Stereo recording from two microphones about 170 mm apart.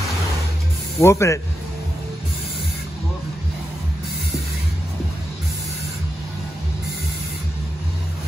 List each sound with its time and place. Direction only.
0.9 s speech: 15° left (ahead or behind)